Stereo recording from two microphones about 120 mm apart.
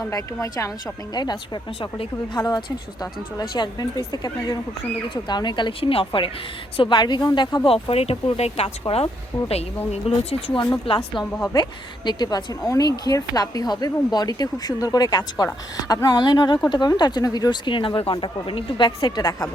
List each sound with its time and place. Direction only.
0.0 s a woman's voice: 25° left (ahead or behind)
1.1 s speech: 35° left (ahead or behind); by 10.0 s 60° left (ahead or behind)
10.2 s speech: 50° left (ahead or behind)
11.5 s speech: 35° left (ahead or behind)